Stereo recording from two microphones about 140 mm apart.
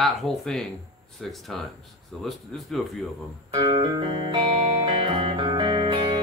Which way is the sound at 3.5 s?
35° right (ahead or behind).